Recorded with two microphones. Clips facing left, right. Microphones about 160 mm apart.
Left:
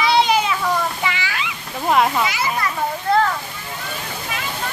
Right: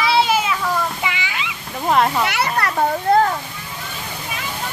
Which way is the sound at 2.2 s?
65° right (ahead or behind).